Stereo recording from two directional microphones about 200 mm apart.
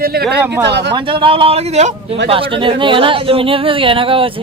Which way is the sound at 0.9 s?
25° right (ahead or behind).